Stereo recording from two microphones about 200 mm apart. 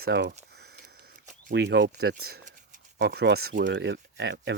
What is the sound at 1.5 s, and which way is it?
Speech, 60° right (ahead or behind).